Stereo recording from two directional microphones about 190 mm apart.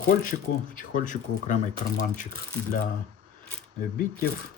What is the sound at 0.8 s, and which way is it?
Speech, 45° left (ahead or behind).